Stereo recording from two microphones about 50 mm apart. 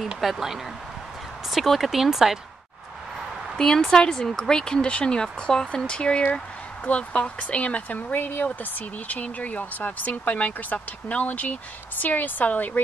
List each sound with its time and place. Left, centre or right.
0.2 s speech: centre
3.5 s speech: centre; by 12.8 s left